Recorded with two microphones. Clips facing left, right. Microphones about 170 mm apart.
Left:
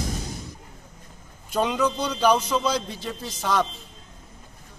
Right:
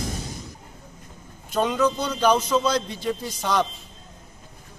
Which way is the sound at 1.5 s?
5° left (ahead or behind).